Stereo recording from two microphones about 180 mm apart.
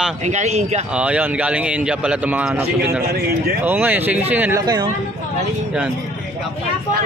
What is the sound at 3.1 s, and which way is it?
Speech, 60° right (ahead or behind).